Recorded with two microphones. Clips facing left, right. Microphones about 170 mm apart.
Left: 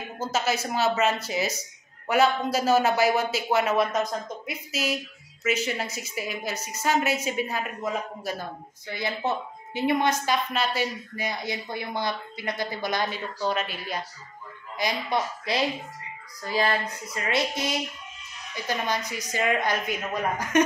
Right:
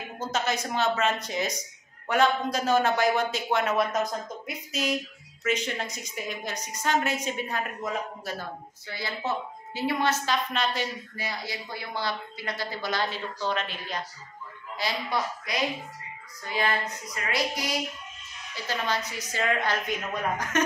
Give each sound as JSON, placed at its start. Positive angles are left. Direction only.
{"t": 0.2, "sound": "a woman's voice", "side_deg": 5}
{"t": 8.8, "sound": "child singing", "side_deg": 20}
{"t": 9.8, "sound": "a man's voice", "side_deg": 20}
{"t": 15.5, "sound": "child singing", "side_deg": 30}
{"t": 16.4, "sound": "speech", "side_deg": 35}
{"t": 17.1, "sound": "child singing", "side_deg": 25}
{"t": 19.0, "sound": "a man's voice", "side_deg": 15}